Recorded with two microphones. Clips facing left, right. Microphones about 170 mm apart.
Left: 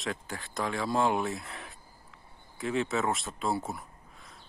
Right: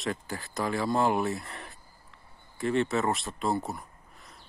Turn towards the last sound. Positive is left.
turn(degrees=0)  # may be behind; listen again after turning